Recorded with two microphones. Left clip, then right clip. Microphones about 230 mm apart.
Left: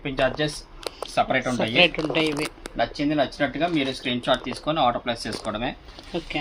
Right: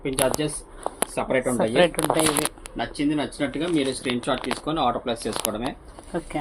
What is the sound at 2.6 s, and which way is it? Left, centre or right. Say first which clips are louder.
Speech: left 2 dB; left.